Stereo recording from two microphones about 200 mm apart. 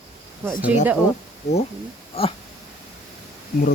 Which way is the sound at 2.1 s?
30° left (ahead or behind).